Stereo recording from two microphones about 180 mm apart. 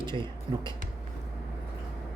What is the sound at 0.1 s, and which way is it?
Speech, 25° right (ahead or behind).